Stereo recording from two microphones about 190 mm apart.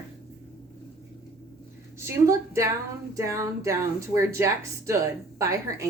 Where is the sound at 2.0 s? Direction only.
15° right (ahead or behind).